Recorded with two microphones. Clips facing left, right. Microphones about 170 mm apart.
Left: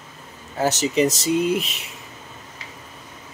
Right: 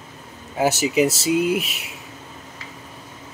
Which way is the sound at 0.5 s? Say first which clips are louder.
Right 1 dB; 10° right (ahead or behind).